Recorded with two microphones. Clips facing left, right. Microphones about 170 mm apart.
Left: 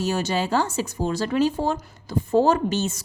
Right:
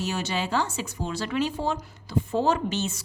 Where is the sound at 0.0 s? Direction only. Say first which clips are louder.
Left 5 dB; 40° left (ahead or behind).